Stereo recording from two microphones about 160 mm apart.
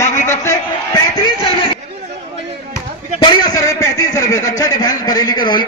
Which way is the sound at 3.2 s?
25° left (ahead or behind).